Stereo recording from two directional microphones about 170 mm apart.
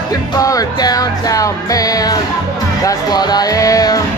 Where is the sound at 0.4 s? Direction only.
20° left (ahead or behind).